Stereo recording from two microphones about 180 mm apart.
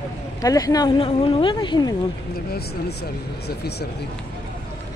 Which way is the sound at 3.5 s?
65° left (ahead or behind).